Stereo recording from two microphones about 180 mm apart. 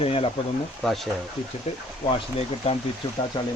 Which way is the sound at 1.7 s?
35° left (ahead or behind).